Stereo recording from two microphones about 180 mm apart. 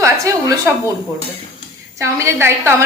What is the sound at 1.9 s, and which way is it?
Speech, 15° right (ahead or behind).